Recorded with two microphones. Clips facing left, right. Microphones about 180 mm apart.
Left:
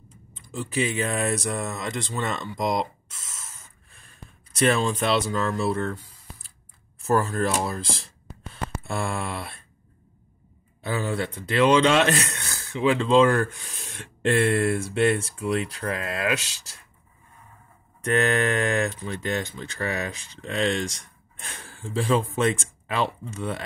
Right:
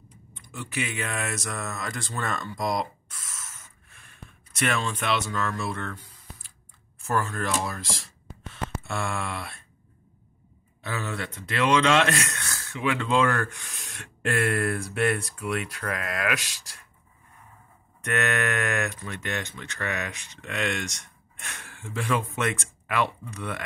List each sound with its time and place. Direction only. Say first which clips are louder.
0.4 s speech: left 6 dB; 30° left (ahead or behind)
7.0 s speech: left 5 dB; 35° left (ahead or behind)
8.8 s a sound: left 3 dB; 30° left (ahead or behind)
10.8 s speech: left 5 dB; 30° left (ahead or behind)
18.0 s speech: left 4 dB; 30° left (ahead or behind)